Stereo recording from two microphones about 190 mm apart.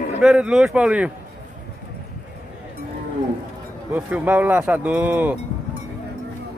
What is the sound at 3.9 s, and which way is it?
Speech, 10° right (ahead or behind).